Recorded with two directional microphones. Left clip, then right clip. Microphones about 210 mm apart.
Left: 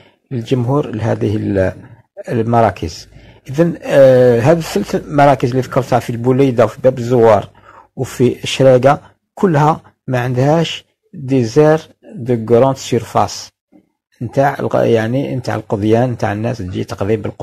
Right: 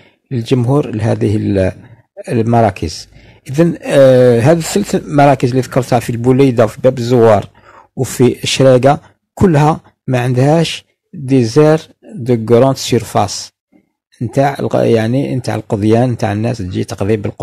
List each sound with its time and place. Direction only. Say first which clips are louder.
0.5 s a man's voice: right 2 dB; 45° right (ahead or behind)